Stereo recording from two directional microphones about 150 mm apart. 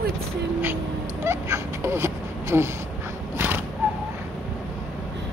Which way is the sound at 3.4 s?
15° right (ahead or behind).